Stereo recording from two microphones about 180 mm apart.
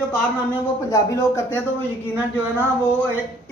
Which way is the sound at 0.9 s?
15° left (ahead or behind).